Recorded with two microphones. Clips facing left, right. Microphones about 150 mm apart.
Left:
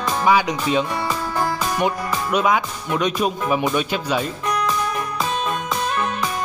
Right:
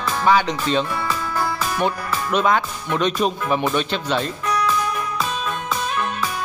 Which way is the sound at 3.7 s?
10° left (ahead or behind).